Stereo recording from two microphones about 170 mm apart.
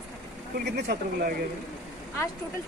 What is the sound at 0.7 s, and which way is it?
Speech, 75° right (ahead or behind).